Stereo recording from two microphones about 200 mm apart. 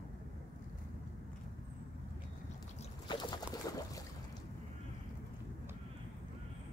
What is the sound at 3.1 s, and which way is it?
Boat, 20° left (ahead or behind).